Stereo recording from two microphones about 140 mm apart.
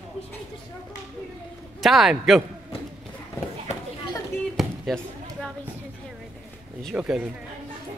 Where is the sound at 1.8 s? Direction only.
Centre (ahead or behind).